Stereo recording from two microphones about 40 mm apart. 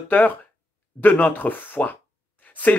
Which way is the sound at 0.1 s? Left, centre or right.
Left.